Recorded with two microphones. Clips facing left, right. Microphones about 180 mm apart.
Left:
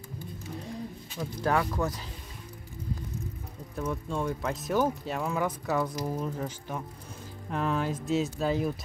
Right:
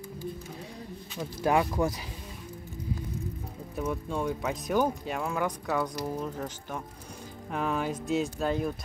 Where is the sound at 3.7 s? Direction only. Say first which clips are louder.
Right 1 dB; 10° right (ahead or behind).